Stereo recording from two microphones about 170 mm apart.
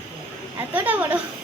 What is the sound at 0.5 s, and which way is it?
Speech, 10° right (ahead or behind).